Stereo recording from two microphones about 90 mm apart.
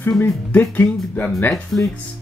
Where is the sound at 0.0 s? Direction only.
20° left (ahead or behind).